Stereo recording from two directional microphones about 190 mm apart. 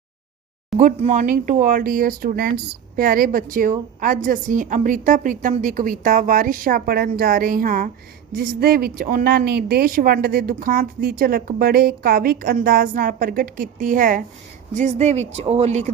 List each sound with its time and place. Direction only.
0.8 s speech: 40° right (ahead or behind)